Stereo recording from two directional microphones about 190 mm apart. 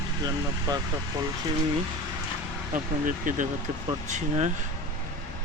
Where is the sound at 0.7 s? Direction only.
20° right (ahead or behind).